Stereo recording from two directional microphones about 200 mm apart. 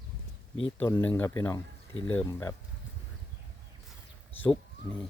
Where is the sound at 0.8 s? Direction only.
10° left (ahead or behind).